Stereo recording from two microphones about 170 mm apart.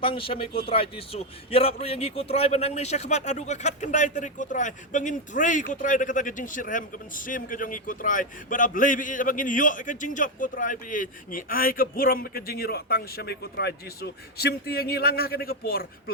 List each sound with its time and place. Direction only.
0.0 s a man's voice: 30° left (ahead or behind); by 15.9 s 60° left (ahead or behind)